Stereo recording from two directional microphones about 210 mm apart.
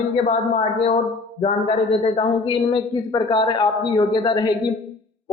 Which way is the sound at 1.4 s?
30° left (ahead or behind).